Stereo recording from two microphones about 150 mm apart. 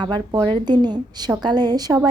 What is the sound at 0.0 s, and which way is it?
A woman's voice, 30° right (ahead or behind).